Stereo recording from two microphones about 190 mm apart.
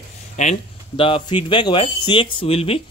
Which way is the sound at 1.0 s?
25° left (ahead or behind).